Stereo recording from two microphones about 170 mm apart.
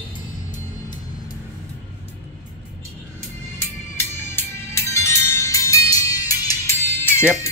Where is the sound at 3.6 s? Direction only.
15° left (ahead or behind).